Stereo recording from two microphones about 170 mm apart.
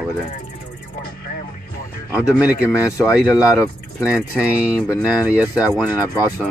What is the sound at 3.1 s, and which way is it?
Speech, 5° right (ahead or behind).